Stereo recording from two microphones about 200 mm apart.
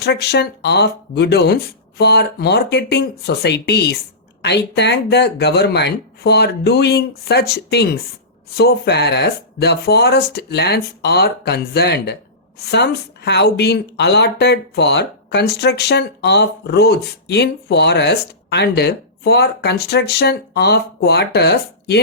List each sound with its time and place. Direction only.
0.0 s speech: 55° left (ahead or behind)